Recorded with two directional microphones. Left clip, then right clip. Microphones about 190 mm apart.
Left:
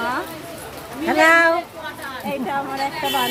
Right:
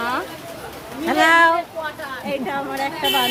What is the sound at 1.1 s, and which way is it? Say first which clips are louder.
Speech: even; 5° left (ahead or behind).